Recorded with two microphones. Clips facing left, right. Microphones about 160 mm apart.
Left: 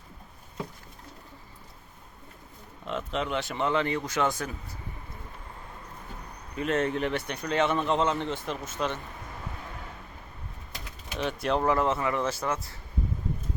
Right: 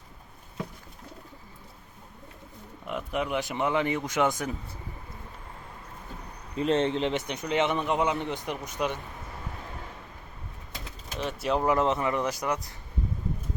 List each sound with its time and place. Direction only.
2.8 s speech: 15° right (ahead or behind)
6.6 s speech: 30° right (ahead or behind)
11.2 s speech: 5° right (ahead or behind)
11.7 s speech: 20° right (ahead or behind)